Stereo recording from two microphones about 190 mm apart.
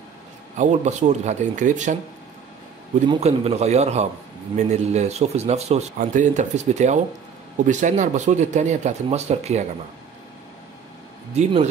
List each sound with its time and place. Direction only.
0.6 s speech: 40° right (ahead or behind)
3.1 s speech: 35° right (ahead or behind)
11.3 s speech: 35° right (ahead or behind)